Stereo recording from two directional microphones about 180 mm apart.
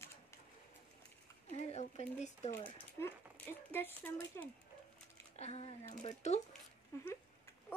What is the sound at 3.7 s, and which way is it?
Speech, 10° left (ahead or behind).